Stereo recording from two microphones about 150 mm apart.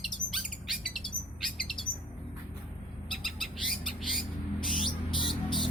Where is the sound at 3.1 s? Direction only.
Centre (ahead or behind).